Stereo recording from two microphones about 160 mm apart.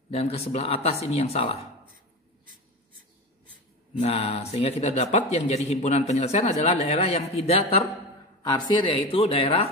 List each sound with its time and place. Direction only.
0.1 s speech: 40° left (ahead or behind)
4.0 s speech: 40° left (ahead or behind)
8.4 s speech: 25° left (ahead or behind)